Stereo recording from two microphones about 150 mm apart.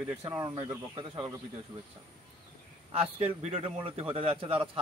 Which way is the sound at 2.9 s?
40° right (ahead or behind).